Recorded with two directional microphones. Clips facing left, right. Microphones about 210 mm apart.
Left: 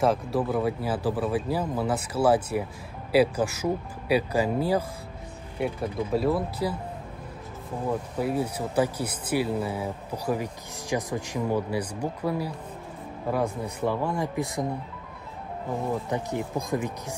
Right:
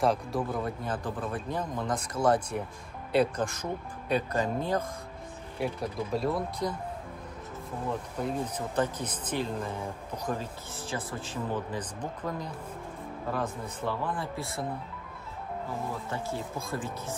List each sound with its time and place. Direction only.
0.0 s speech: centre (ahead or behind)
8.2 s speech: 10° left (ahead or behind)
16.1 s speech: 15° left (ahead or behind)